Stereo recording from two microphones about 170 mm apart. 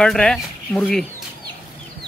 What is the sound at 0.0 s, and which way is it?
Speech, 5° left (ahead or behind).